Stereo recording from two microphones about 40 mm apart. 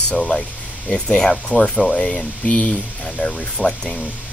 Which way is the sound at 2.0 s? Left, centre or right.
Centre.